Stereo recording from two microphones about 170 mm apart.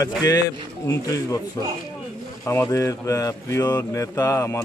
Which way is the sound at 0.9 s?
20° left (ahead or behind).